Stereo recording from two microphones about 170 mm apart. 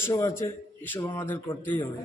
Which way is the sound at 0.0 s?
20° left (ahead or behind).